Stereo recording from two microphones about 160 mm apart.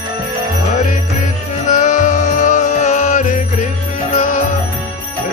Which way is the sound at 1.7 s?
50° left (ahead or behind).